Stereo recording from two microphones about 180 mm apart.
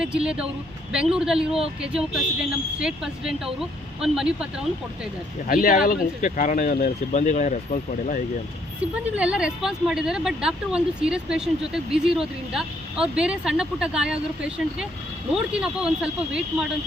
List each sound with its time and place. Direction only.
0.0 s a woman's voice: 5° right (ahead or behind)
5.5 s speech: 50° left (ahead or behind)
8.8 s a woman's voice: 5° right (ahead or behind)